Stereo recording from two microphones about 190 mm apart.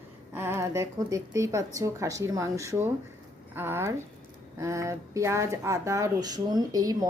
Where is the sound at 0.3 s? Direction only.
10° right (ahead or behind).